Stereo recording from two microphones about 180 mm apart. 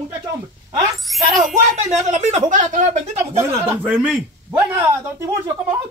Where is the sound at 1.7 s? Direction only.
40° right (ahead or behind).